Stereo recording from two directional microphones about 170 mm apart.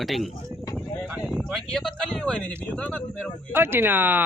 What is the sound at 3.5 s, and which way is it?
Speech, 15° right (ahead or behind).